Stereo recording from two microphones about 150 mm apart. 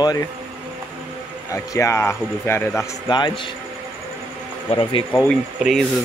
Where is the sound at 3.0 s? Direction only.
30° left (ahead or behind).